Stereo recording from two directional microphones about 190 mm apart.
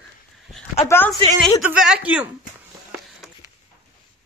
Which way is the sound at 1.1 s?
20° right (ahead or behind).